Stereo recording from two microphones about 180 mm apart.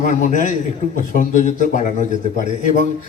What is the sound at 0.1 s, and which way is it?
A man's voice, 45° left (ahead or behind).